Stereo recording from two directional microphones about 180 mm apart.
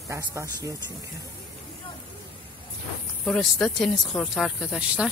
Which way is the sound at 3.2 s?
5° left (ahead or behind).